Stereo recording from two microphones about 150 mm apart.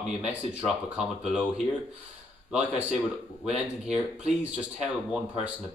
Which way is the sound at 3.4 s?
45° right (ahead or behind).